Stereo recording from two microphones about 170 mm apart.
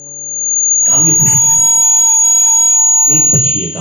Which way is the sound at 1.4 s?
Centre (ahead or behind).